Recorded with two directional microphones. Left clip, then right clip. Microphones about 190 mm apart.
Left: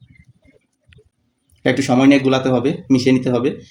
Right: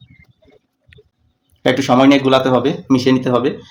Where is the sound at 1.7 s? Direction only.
15° left (ahead or behind).